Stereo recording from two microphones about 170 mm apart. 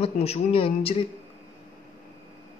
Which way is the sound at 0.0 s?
35° left (ahead or behind).